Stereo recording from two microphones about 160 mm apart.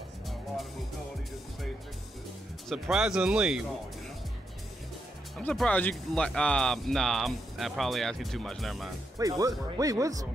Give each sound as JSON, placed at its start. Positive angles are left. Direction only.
{"t": 2.7, "sound": "speech", "side_deg": -5}
{"t": 5.4, "sound": "speech", "side_deg": 10}
{"t": 9.2, "sound": "speech", "side_deg": -20}